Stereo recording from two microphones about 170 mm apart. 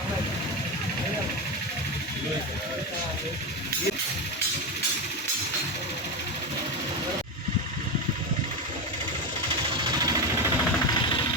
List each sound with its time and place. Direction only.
9.8 s vehicle: 25° right (ahead or behind)